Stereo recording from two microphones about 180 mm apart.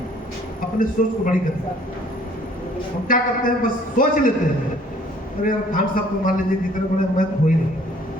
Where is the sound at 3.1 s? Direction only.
50° left (ahead or behind).